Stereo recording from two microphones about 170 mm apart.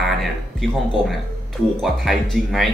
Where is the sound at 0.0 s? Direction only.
Centre (ahead or behind).